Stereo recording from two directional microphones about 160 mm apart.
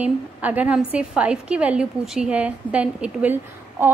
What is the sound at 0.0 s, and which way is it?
A woman's voice, 10° right (ahead or behind).